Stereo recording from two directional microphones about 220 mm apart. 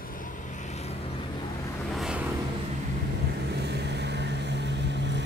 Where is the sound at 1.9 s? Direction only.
Centre (ahead or behind).